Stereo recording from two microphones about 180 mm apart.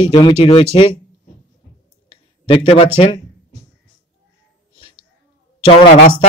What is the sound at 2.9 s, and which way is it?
Music, 30° left (ahead or behind).